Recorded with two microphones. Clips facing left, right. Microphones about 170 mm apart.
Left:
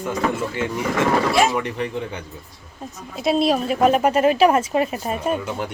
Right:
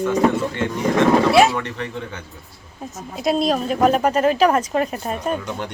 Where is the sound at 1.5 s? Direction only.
15° left (ahead or behind).